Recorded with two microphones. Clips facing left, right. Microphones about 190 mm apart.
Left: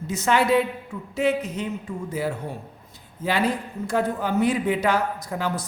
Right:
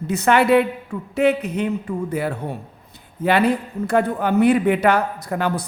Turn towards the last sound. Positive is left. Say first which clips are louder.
# right 5 dB
turn(degrees=-60)  # may be behind; listen again after turning